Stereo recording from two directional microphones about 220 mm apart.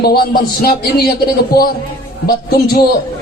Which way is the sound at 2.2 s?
45° left (ahead or behind).